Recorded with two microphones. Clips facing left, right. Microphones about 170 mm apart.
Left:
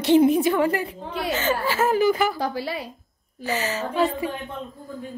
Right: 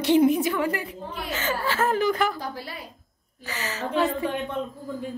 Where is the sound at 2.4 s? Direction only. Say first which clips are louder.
Left 8 dB; 90° left.